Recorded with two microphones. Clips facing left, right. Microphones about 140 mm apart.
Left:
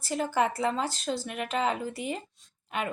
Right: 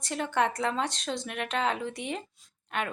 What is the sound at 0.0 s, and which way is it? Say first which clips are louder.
Speech: left 1 dB; 5° left (ahead or behind).